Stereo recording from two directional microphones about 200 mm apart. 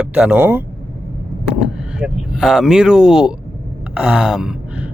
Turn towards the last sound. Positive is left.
turn(degrees=-5)  # may be behind; listen again after turning